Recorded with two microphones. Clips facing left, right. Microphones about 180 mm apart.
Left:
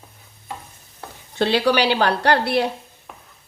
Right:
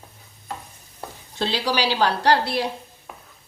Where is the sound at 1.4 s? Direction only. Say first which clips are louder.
Left 6 dB; 60° left (ahead or behind).